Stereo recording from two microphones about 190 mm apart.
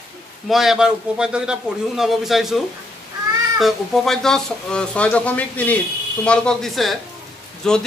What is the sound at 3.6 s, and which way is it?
Speech, centre (ahead or behind).